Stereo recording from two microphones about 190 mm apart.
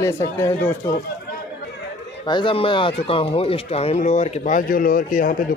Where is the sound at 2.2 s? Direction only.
25° left (ahead or behind).